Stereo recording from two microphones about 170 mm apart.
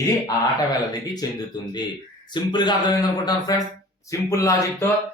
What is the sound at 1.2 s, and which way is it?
A man's voice, 20° left (ahead or behind).